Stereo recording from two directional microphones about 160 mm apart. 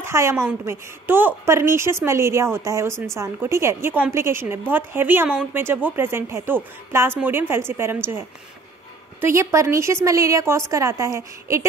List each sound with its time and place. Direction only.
0.0 s a woman's voice: 15° right (ahead or behind)
9.2 s a woman's voice: 20° right (ahead or behind)